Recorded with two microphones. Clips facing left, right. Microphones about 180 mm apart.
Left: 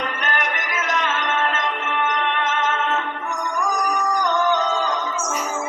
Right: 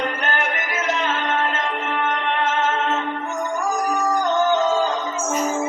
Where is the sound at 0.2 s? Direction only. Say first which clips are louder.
Right 1 dB; 30° right (ahead or behind).